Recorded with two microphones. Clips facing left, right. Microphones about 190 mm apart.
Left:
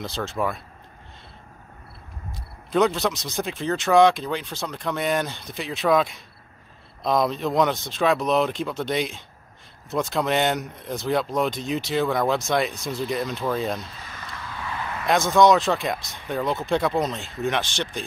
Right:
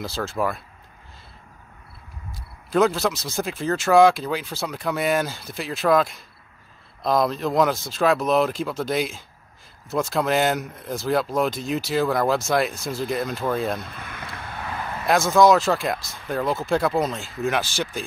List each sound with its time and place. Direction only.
0.0 s speech: 5° right (ahead or behind)
2.7 s speech: centre (ahead or behind)
13.7 s a sound: 55° right (ahead or behind)
15.0 s speech: 5° right (ahead or behind)